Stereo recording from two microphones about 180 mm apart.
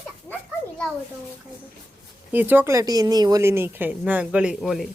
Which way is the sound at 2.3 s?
10° right (ahead or behind).